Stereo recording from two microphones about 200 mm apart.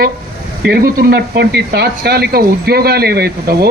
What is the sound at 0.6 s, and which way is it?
Speech, 55° right (ahead or behind).